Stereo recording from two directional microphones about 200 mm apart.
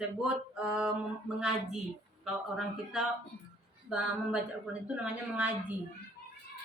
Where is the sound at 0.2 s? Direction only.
5° right (ahead or behind).